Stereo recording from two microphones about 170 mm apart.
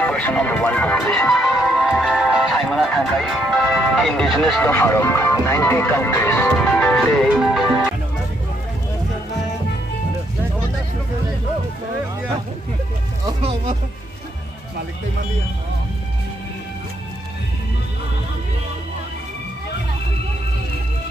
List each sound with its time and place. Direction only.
0.0 s speech: 5° left (ahead or behind)
13.4 s music: 35° right (ahead or behind)